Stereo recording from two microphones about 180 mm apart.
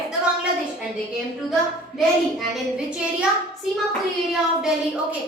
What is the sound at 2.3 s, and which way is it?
Speech, 5° right (ahead or behind).